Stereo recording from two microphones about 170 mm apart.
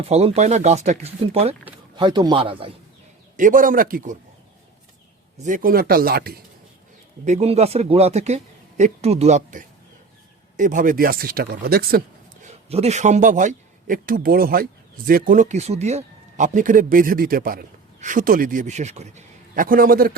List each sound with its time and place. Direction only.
0.0 s a man's voice: 35° right (ahead or behind)
3.3 s a man's voice: 50° right (ahead or behind)
5.4 s speech: 50° right (ahead or behind)
7.3 s speech: 40° right (ahead or behind); by 12.5 s 60° right (ahead or behind)
12.5 s speech: 35° right (ahead or behind); by 20.1 s 55° right (ahead or behind)